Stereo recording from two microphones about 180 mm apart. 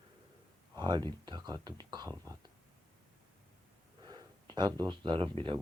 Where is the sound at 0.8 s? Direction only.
25° right (ahead or behind).